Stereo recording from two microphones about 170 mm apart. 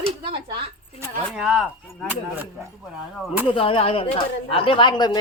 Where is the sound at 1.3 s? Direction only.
Centre (ahead or behind).